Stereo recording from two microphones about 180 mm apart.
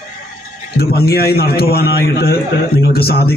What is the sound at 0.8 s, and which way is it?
A man's voice, 60° left (ahead or behind).